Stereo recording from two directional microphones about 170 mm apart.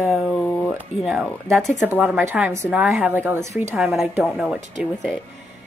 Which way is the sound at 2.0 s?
10° right (ahead or behind).